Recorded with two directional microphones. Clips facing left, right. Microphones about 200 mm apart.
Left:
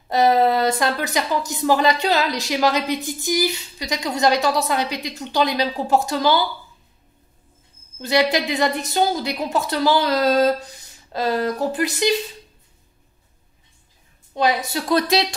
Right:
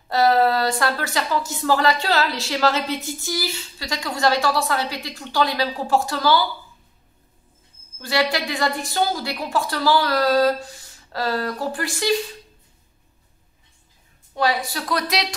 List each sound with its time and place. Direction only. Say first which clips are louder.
0.1 s a woman's voice: left 1 dB; 20° left (ahead or behind)
8.0 s a woman's voice: left 3 dB; 20° left (ahead or behind)
14.3 s a woman's voice: left 2 dB; 20° left (ahead or behind)